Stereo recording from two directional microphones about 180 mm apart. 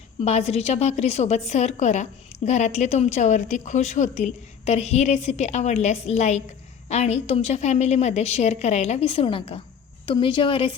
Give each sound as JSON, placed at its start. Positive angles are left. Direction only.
{"t": 0.2, "sound": "a woman's voice", "side_deg": 35}